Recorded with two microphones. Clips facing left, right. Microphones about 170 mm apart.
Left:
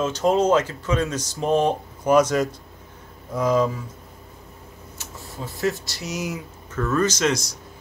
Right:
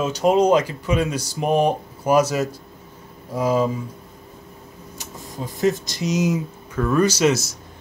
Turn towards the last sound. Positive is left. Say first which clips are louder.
# right 4 dB
turn(degrees=-5)  # may be behind; listen again after turning